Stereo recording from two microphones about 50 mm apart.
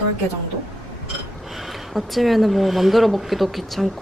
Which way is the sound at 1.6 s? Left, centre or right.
Centre.